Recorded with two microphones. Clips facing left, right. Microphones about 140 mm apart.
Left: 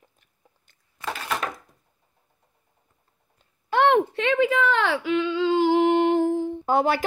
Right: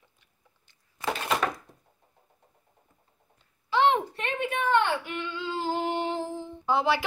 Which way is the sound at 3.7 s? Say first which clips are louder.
Left 4 dB; 60° left (ahead or behind).